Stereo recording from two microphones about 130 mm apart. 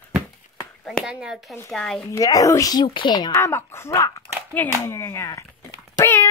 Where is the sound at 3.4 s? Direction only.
20° left (ahead or behind).